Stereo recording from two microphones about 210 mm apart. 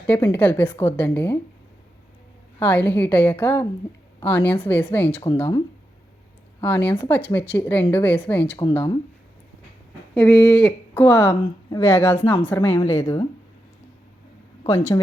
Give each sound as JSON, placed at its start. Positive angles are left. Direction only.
{"t": 0.1, "sound": "speech", "side_deg": 10}
{"t": 2.6, "sound": "a woman's voice", "side_deg": 10}
{"t": 10.2, "sound": "speech", "side_deg": 5}
{"t": 14.7, "sound": "speech", "side_deg": 15}